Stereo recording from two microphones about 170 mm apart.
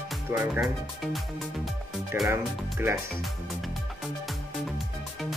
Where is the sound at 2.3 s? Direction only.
15° right (ahead or behind).